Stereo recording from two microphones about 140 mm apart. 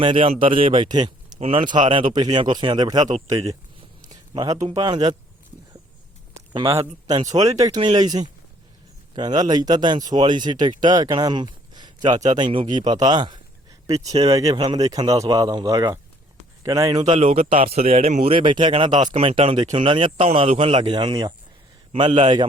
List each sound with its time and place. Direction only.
0.0 s speech: 40° right (ahead or behind)
1.4 s speech: 40° right (ahead or behind)
4.1 s a sound: 30° right (ahead or behind)
4.7 s speech: 30° right (ahead or behind)
6.7 s speech: 20° right (ahead or behind)
11.7 s a sound: 30° right (ahead or behind)
12.3 s speech: 35° right (ahead or behind)
17.2 s speech: 45° right (ahead or behind)